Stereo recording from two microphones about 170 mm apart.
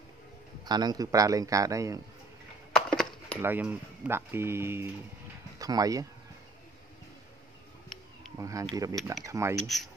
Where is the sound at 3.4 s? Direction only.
10° right (ahead or behind).